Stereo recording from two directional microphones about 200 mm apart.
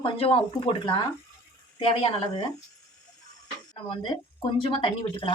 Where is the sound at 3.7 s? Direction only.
25° left (ahead or behind).